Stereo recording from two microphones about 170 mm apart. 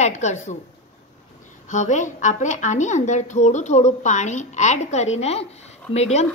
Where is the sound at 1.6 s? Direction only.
45° left (ahead or behind).